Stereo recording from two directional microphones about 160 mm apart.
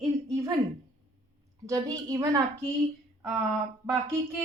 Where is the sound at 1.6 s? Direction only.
20° right (ahead or behind).